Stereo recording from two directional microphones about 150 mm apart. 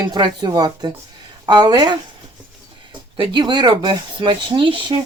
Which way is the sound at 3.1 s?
30° right (ahead or behind).